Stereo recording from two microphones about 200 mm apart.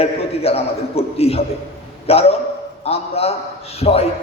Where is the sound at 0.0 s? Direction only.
30° left (ahead or behind).